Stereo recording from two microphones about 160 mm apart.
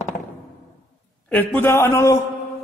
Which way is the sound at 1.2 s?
10° left (ahead or behind).